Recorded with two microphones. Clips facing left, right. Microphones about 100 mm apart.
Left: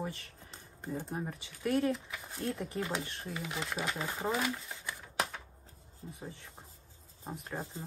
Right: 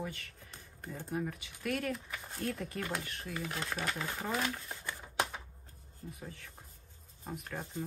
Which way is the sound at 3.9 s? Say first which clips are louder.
Left 2 dB; 20° left (ahead or behind).